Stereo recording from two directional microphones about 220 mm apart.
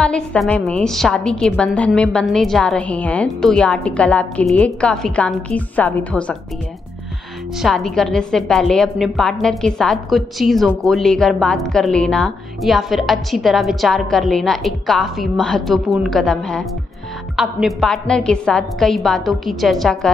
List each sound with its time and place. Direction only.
0.0 s a woman's voice: 5° left (ahead or behind)
7.6 s a woman's voice: centre (ahead or behind)